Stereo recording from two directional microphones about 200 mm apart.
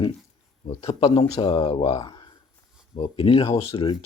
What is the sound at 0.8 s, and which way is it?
Speech, 30° left (ahead or behind).